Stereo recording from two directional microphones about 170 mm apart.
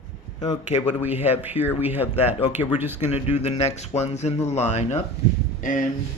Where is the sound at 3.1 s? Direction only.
40° left (ahead or behind).